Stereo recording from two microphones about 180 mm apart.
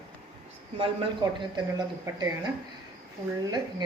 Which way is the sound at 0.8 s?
25° right (ahead or behind).